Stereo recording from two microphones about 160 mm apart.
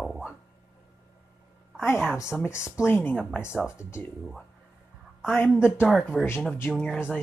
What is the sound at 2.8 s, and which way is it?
Speech, 15° left (ahead or behind).